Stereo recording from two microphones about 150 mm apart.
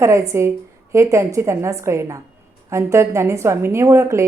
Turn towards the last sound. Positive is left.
turn(degrees=-20)  # may be behind; listen again after turning